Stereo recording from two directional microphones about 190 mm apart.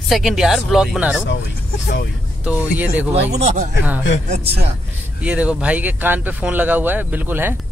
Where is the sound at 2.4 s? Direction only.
10° right (ahead or behind).